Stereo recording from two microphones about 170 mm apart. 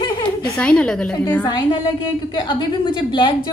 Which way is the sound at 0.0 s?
25° left (ahead or behind).